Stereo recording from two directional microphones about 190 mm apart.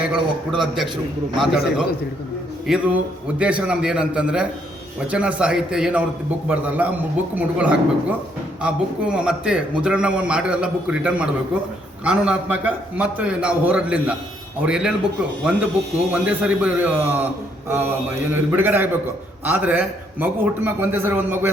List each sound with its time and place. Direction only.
0.1 s a man's voice: centre (ahead or behind)
18.3 s a man's voice: 10° right (ahead or behind)